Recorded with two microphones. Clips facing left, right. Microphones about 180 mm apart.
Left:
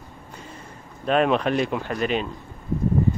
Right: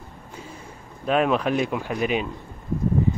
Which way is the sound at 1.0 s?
5° right (ahead or behind).